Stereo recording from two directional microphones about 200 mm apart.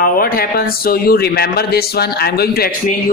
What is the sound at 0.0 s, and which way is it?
Speech, 50° left (ahead or behind).